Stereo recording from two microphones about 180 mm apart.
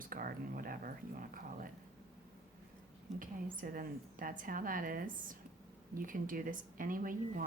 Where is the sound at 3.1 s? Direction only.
50° right (ahead or behind).